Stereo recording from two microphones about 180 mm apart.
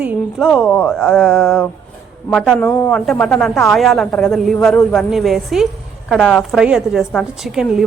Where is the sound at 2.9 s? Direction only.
5° left (ahead or behind).